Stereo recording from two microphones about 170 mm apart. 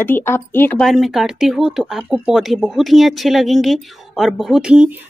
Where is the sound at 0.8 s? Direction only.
Centre (ahead or behind).